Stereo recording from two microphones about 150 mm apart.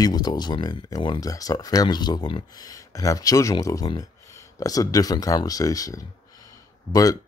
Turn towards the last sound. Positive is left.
turn(degrees=25)  # may be behind; listen again after turning